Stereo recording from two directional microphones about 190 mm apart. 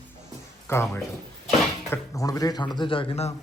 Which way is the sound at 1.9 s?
15° left (ahead or behind).